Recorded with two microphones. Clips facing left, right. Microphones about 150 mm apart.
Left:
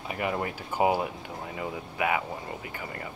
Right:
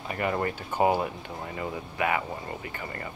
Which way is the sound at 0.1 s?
5° left (ahead or behind).